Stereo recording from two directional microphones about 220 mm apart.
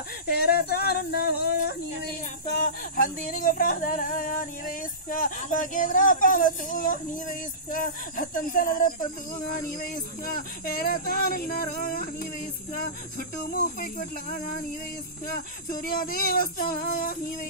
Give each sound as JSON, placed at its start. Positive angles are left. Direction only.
{"t": 0.3, "sound": "female singing", "side_deg": 45}
{"t": 2.5, "sound": "a sound", "side_deg": 40}
{"t": 9.8, "sound": "speech", "side_deg": 40}
{"t": 13.5, "sound": "speech", "side_deg": 40}
{"t": 15.7, "sound": "speech", "side_deg": 40}